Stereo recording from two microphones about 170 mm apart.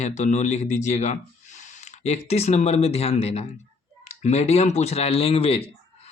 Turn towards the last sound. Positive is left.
turn(degrees=35)  # may be behind; listen again after turning